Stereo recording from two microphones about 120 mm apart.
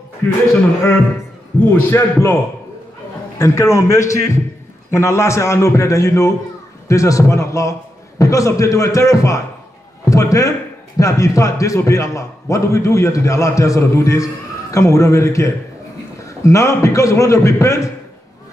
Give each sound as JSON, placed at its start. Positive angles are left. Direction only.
{"t": 0.2, "sound": "a man's voice", "side_deg": 20}
{"t": 1.7, "sound": "a man's voice", "side_deg": 15}
{"t": 3.3, "sound": "a man's voice", "side_deg": 25}